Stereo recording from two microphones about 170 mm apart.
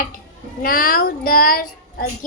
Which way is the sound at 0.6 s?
60° left (ahead or behind).